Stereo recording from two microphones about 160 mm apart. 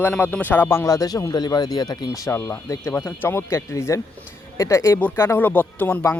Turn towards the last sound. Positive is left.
turn(degrees=10)  # may be behind; listen again after turning